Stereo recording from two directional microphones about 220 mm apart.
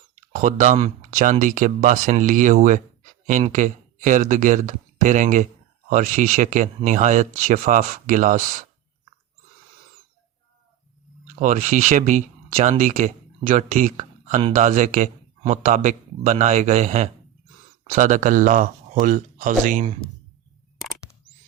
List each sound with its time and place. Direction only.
0.2 s speech: 35° right (ahead or behind)
11.3 s speech: 35° right (ahead or behind)